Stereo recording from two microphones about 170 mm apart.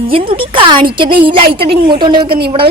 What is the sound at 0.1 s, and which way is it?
A woman's voice, 30° right (ahead or behind).